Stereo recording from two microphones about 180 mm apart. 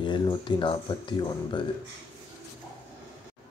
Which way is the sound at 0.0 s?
25° left (ahead or behind).